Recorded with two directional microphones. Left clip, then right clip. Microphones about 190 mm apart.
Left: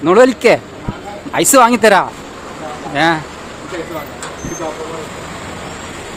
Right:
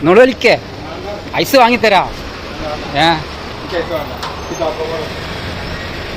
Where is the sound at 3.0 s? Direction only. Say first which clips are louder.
Right 1 dB; 25° left (ahead or behind).